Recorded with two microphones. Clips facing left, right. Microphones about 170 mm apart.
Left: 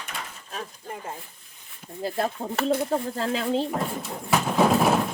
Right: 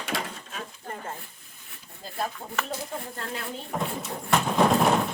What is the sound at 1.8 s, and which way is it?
Speech, 70° left (ahead or behind).